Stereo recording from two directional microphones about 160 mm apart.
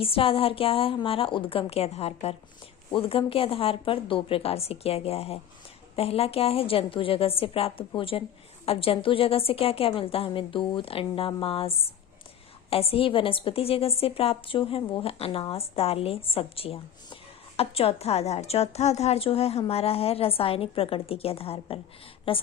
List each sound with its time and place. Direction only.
0.0 s a woman's voice: 35° left (ahead or behind)